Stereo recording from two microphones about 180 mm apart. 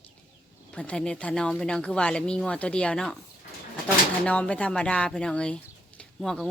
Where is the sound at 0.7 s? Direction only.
5° left (ahead or behind).